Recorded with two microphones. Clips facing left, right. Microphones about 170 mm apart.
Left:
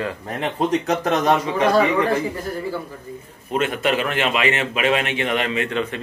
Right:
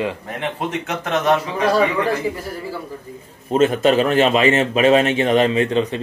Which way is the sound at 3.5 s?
35° right (ahead or behind).